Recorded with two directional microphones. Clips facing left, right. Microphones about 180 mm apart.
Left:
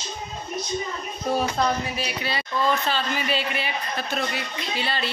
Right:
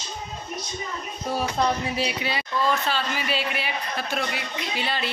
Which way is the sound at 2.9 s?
5° right (ahead or behind).